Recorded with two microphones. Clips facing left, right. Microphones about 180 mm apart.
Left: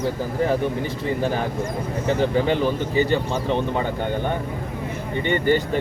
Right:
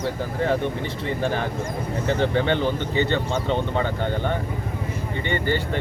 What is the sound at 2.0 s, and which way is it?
Speech, 10° left (ahead or behind).